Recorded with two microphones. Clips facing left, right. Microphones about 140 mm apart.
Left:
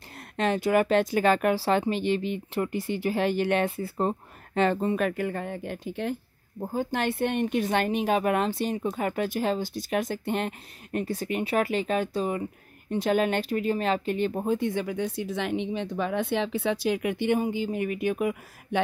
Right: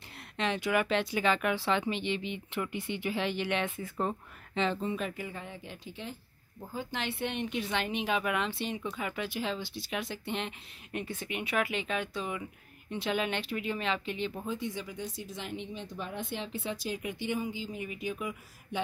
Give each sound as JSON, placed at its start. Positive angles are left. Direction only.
{"t": 0.4, "sound": "speech", "side_deg": 40}
{"t": 4.6, "sound": "a woman's voice", "side_deg": 50}